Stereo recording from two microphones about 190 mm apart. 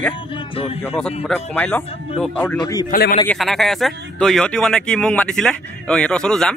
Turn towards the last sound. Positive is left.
turn(degrees=5)  # may be behind; listen again after turning